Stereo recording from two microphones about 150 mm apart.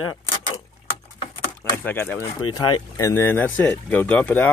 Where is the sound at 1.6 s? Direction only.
10° left (ahead or behind).